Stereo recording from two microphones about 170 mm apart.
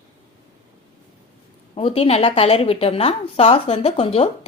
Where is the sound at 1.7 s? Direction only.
35° left (ahead or behind).